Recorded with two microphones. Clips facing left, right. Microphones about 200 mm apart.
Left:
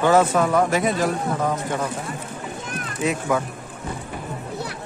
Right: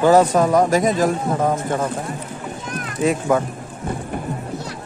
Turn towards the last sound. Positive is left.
turn(degrees=-45)  # may be behind; listen again after turning